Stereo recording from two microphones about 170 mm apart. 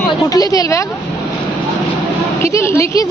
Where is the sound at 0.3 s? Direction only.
20° left (ahead or behind).